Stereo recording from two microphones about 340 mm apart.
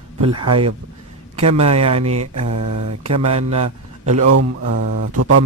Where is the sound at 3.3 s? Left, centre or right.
Centre.